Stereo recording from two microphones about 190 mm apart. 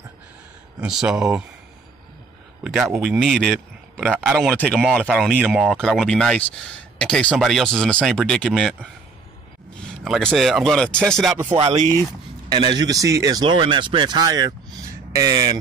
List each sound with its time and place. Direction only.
0.7 s a man's voice: 5° right (ahead or behind)
2.6 s a man's voice: centre (ahead or behind)
10.0 s a man's voice: centre (ahead or behind)
11.4 s speech: 30° right (ahead or behind)